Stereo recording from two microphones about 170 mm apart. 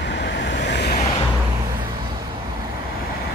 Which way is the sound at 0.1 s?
90° left.